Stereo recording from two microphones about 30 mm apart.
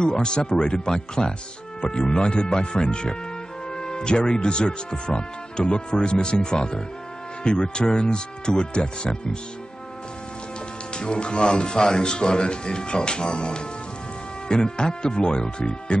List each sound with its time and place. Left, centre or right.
0.0 s speech: left
11.0 s speech: left